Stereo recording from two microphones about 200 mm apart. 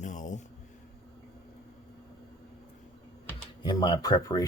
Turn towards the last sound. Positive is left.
turn(degrees=20)  # may be behind; listen again after turning